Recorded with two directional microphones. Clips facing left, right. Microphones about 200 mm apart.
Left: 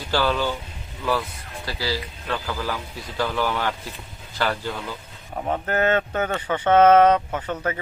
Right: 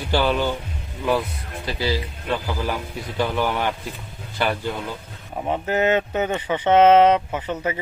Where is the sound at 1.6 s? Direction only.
20° right (ahead or behind).